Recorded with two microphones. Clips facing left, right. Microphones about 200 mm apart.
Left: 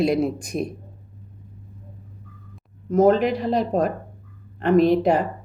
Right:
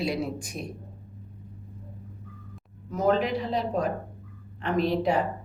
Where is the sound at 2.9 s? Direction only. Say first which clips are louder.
Left 7 dB; 45° left (ahead or behind).